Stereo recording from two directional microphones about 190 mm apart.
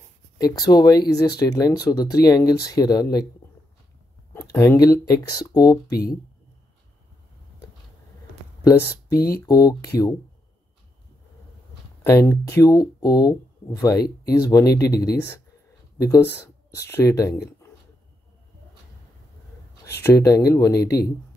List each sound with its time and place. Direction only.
0.4 s speech: 20° left (ahead or behind)
3.4 s a sound: 10° left (ahead or behind)
4.3 s speech: 15° left (ahead or behind)
9.1 s speech: 55° left (ahead or behind)
9.5 s speech: 20° left (ahead or behind)
12.0 s speech: 15° left (ahead or behind)
15.0 s speech: 60° left (ahead or behind)
16.0 s speech: 15° left (ahead or behind)
19.8 s speech: 15° left (ahead or behind)